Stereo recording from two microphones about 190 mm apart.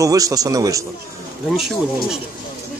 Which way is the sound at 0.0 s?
20° right (ahead or behind).